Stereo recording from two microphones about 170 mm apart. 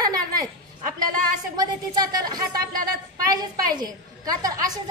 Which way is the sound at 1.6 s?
25° right (ahead or behind).